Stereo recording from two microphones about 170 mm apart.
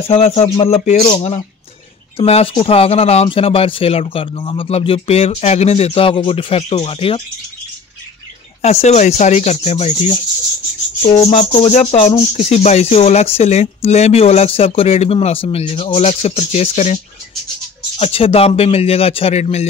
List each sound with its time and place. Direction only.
0.4 s speech: 35° left (ahead or behind)
8.6 s speech: 40° left (ahead or behind)